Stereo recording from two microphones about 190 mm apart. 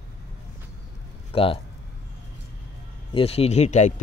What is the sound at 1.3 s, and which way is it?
Speech, 30° left (ahead or behind).